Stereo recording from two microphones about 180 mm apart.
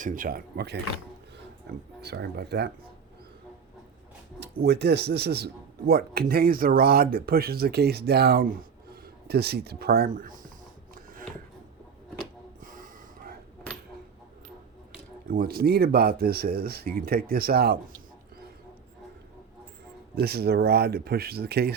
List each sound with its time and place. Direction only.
0.0 s speech: 50° right (ahead or behind); by 0.8 s 65° right (ahead or behind)
2.0 s speech: 65° right (ahead or behind)
4.4 s speech: 65° right (ahead or behind); by 10.5 s 50° right (ahead or behind)
10.9 s a sound: 50° right (ahead or behind)
15.3 s speech: 60° right (ahead or behind)
20.1 s speech: 60° right (ahead or behind)